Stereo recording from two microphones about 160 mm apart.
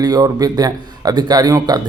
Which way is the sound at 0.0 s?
25° right (ahead or behind).